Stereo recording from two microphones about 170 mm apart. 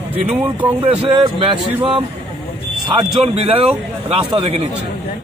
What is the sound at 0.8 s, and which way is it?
A man's voice, 30° right (ahead or behind).